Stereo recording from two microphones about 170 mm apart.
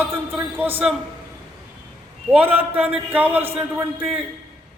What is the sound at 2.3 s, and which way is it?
A man's voice, 10° right (ahead or behind).